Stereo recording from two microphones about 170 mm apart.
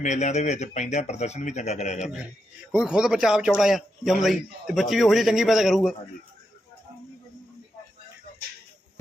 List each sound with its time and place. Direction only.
0.0 s speech: 45° left (ahead or behind)
2.7 s a man's voice: 5° right (ahead or behind)